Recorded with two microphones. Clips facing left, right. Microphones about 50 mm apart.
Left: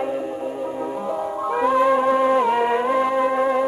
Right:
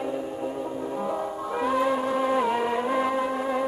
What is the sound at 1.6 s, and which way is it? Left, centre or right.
Music, centre.